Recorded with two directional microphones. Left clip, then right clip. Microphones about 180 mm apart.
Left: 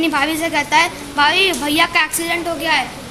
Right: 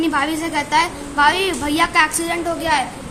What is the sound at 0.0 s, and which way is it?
A woman's voice, 15° left (ahead or behind).